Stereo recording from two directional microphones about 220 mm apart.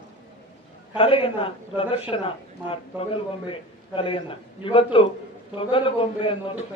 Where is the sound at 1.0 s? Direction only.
25° left (ahead or behind).